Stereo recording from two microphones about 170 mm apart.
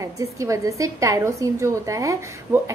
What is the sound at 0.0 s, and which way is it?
A woman's voice, 20° right (ahead or behind).